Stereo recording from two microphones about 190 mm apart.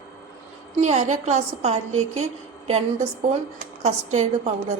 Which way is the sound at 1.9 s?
90° right.